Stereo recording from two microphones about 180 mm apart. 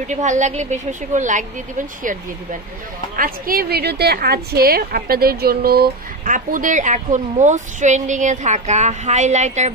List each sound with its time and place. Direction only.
0.0 s a woman's voice: 40° right (ahead or behind)
3.2 s a woman's voice: 55° right (ahead or behind)